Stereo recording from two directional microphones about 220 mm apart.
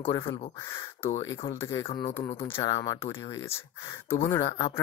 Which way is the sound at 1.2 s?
10° left (ahead or behind).